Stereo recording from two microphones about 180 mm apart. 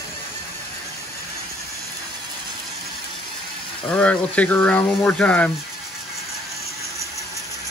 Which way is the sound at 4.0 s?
5° left (ahead or behind).